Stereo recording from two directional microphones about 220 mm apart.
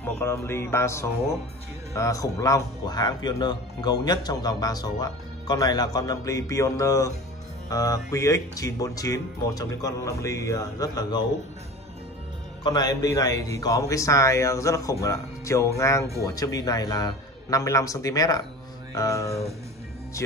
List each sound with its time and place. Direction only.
0.0 s speech: 10° left (ahead or behind)
12.6 s speech: 15° left (ahead or behind)